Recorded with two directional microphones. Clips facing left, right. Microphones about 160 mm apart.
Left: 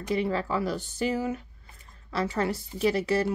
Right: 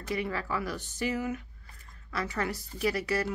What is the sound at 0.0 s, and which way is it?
A woman's voice, 25° left (ahead or behind).